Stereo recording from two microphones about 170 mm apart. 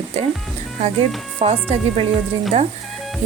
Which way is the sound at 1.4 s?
35° right (ahead or behind).